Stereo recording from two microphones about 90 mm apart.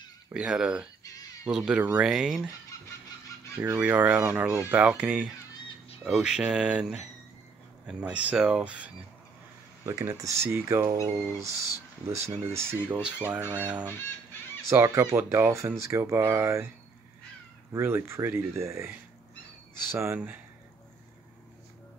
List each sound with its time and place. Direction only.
0.3 s speech: 5° right (ahead or behind)
1.0 s a sound: 45° left (ahead or behind)
1.4 s speech: 5° right (ahead or behind)
2.0 s speech: 5° right (ahead or behind)
3.7 s speech: 15° right (ahead or behind)
9.8 s speech: 35° right (ahead or behind); by 13.8 s 15° right (ahead or behind)
14.7 s speech: 30° right (ahead or behind)
17.7 s speech: 25° right (ahead or behind)